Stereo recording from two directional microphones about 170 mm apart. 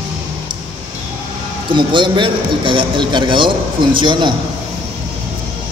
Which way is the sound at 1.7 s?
30° right (ahead or behind).